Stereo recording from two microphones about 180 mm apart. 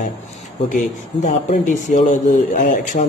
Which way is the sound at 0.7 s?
45° left (ahead or behind).